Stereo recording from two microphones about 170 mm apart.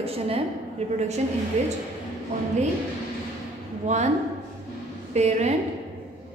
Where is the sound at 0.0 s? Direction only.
35° right (ahead or behind).